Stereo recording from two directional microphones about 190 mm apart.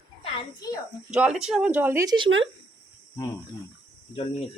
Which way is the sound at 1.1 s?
5° right (ahead or behind).